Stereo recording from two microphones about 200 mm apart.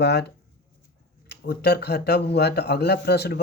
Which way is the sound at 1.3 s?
55° left (ahead or behind).